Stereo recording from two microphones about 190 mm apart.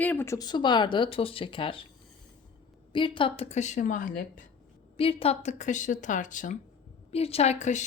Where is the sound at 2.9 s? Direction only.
25° left (ahead or behind); by 4.4 s 45° left (ahead or behind).